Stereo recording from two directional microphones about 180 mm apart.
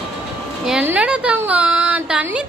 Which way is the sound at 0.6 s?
5° right (ahead or behind).